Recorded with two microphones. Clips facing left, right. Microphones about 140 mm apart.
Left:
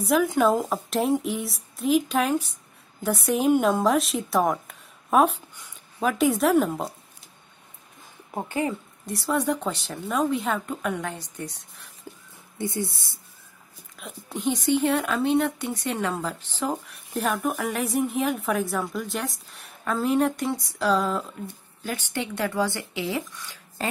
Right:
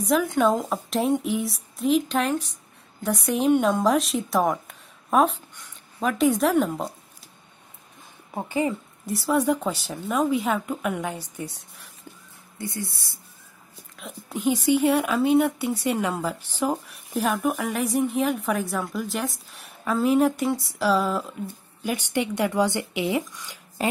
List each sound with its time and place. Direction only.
0.0 s a woman's voice: centre (ahead or behind)
8.5 s speech: 10° right (ahead or behind)
12.5 s speech: 25° left (ahead or behind)
13.9 s speech: centre (ahead or behind)
21.8 s speech: 15° right (ahead or behind)